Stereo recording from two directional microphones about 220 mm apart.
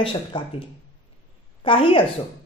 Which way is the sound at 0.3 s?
25° left (ahead or behind).